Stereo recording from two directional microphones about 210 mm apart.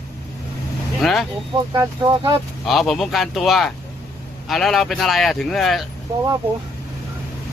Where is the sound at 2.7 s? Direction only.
Centre (ahead or behind).